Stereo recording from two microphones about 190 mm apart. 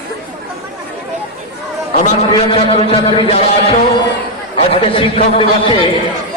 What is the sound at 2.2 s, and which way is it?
A man's voice, 30° left (ahead or behind).